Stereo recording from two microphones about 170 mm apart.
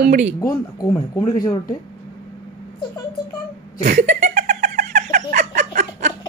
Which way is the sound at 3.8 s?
45° right (ahead or behind).